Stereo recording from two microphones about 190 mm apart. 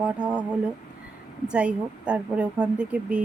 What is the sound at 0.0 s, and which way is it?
A woman's voice, 5° right (ahead or behind).